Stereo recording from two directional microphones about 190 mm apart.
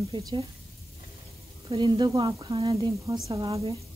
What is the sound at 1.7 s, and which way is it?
A woman's voice, 25° right (ahead or behind).